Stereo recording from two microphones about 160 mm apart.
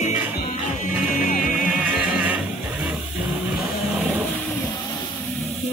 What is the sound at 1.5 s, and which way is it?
Music, centre (ahead or behind).